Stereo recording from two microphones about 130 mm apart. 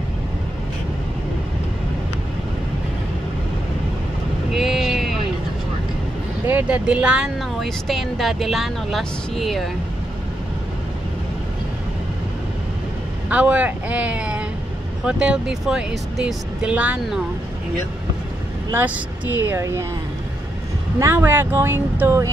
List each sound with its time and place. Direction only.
4.5 s vehicle: 5° right (ahead or behind)
6.4 s speech: 10° right (ahead or behind)
13.3 s speech: 10° right (ahead or behind)
18.7 s speech: 15° right (ahead or behind)
21.0 s speech: 15° right (ahead or behind)